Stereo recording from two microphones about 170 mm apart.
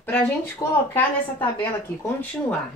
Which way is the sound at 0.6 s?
20° left (ahead or behind).